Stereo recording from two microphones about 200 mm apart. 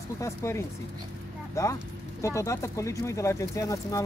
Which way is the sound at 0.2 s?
15° left (ahead or behind).